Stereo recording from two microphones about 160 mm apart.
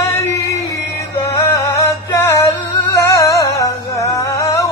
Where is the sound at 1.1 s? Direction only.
20° left (ahead or behind).